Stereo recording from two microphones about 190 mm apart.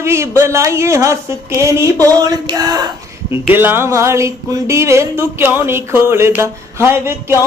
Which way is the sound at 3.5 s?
10° right (ahead or behind).